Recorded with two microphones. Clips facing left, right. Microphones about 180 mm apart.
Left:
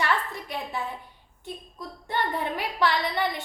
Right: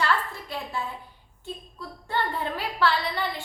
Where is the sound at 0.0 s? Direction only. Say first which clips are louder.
Right 1 dB; 15° left (ahead or behind).